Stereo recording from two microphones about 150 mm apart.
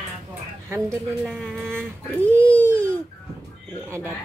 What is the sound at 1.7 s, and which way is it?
Speech, 15° right (ahead or behind).